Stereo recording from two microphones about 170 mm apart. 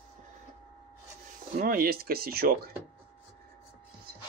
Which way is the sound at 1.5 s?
60° right (ahead or behind).